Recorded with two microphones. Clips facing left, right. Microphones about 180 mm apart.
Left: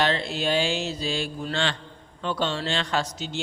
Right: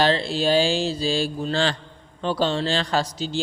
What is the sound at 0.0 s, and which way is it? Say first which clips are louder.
A man's voice: right 4 dB; 30° right (ahead or behind).